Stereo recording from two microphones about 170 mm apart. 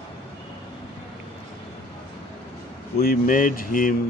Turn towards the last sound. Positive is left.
turn(degrees=55)  # may be behind; listen again after turning